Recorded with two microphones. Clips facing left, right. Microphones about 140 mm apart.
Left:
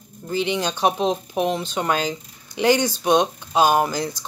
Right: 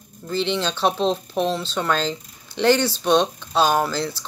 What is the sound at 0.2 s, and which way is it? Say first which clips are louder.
Speech: even; 10° left (ahead or behind).